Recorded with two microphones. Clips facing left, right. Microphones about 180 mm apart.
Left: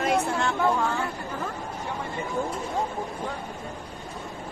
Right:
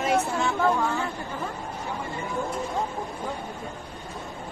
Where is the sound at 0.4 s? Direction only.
Centre (ahead or behind).